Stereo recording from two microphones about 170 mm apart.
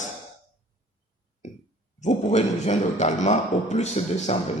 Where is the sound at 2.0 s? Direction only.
45° left (ahead or behind).